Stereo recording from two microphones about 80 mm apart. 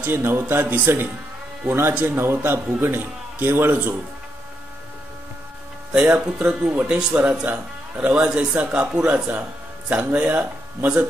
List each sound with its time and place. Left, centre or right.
0.0 s a man's voice: right
5.9 s a man's voice: centre